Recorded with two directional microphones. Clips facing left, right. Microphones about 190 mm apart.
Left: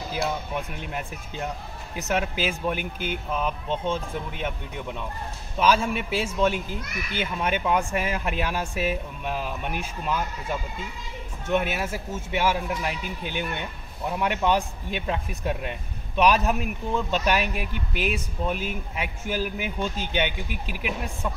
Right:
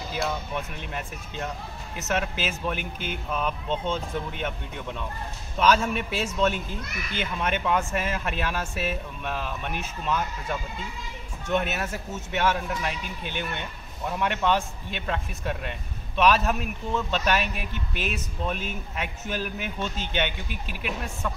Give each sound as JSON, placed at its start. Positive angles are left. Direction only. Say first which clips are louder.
{"t": 0.6, "sound": "speech", "louder": "left 2 dB", "side_deg": 15}